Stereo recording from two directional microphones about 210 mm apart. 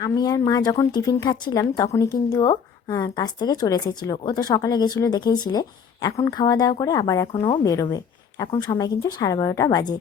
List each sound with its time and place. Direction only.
0.0 s speech: 20° left (ahead or behind)